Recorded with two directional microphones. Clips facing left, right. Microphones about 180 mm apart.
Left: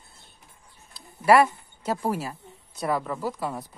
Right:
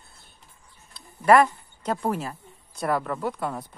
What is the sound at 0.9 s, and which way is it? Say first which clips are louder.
Speech: right 1 dB; 5° left (ahead or behind).